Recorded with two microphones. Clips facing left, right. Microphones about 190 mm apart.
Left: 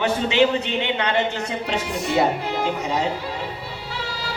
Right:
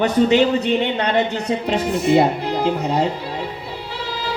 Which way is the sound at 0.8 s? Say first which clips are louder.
Right 3 dB; 40° right (ahead or behind).